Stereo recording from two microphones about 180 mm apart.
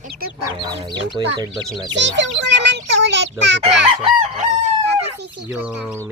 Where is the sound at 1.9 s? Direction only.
80° right.